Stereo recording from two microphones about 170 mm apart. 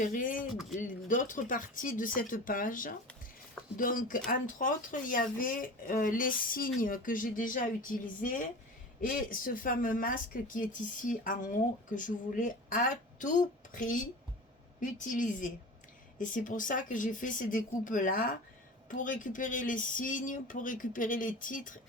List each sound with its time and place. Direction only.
0.0 s speech: 55° left (ahead or behind)